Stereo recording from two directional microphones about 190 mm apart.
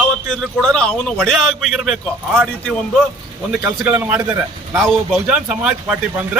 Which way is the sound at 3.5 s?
5° right (ahead or behind).